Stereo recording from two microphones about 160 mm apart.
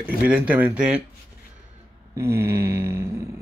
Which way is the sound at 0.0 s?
10° right (ahead or behind).